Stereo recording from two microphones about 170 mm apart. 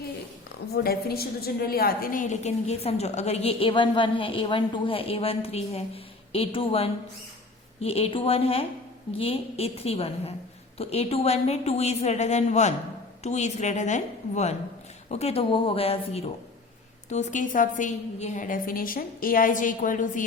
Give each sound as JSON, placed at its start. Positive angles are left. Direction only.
{"t": 0.7, "sound": "a woman's voice", "side_deg": 65}